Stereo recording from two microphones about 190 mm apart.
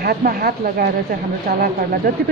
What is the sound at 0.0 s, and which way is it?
Speech, 55° right (ahead or behind).